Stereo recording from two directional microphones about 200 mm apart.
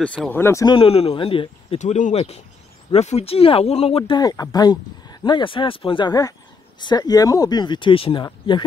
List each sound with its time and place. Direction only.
0.0 s speech: 5° left (ahead or behind)
0.7 s speech: 30° left (ahead or behind)